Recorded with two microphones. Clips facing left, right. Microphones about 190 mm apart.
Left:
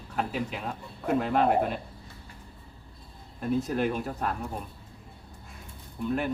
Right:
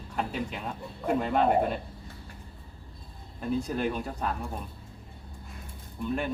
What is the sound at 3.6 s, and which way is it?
Speech, 5° left (ahead or behind).